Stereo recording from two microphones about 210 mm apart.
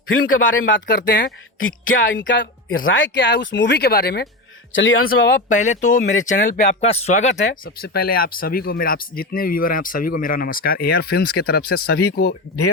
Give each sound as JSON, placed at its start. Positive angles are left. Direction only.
{"t": 0.1, "sound": "speech", "side_deg": 70}
{"t": 2.1, "sound": "speech", "side_deg": 60}
{"t": 4.7, "sound": "speech", "side_deg": 65}
{"t": 5.2, "sound": "speech", "side_deg": 40}